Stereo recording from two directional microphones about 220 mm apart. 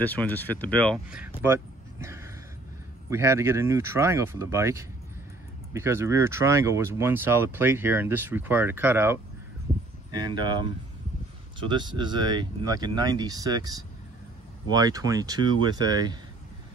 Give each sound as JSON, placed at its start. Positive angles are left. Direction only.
{"t": 0.0, "sound": "speech", "side_deg": 5}
{"t": 1.4, "sound": "a sound", "side_deg": -10}
{"t": 3.1, "sound": "speech", "side_deg": -15}